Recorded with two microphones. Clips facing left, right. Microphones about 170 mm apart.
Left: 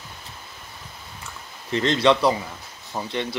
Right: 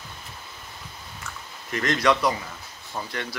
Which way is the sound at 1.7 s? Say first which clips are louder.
Left 4 dB; 25° left (ahead or behind).